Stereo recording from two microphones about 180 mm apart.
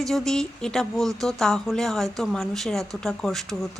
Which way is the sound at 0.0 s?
Centre (ahead or behind).